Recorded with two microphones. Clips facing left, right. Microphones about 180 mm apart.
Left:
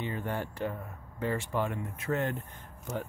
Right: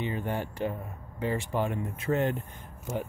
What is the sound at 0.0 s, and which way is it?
Speech, 20° right (ahead or behind).